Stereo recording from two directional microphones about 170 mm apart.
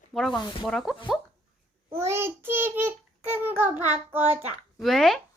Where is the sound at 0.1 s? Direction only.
Centre (ahead or behind).